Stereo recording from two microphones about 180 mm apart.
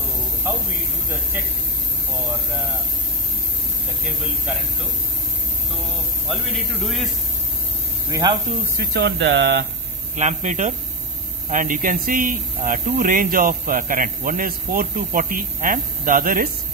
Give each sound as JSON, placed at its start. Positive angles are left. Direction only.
{"t": 6.2, "sound": "a man's voice", "side_deg": 0}
{"t": 8.1, "sound": "speech", "side_deg": -25}
{"t": 8.7, "sound": "speech", "side_deg": -70}
{"t": 10.1, "sound": "a man's voice", "side_deg": -40}